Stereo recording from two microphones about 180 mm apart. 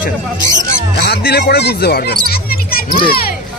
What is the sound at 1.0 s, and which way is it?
Speech, 65° left (ahead or behind).